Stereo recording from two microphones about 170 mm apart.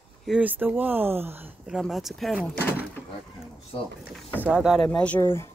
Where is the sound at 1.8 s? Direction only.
Centre (ahead or behind).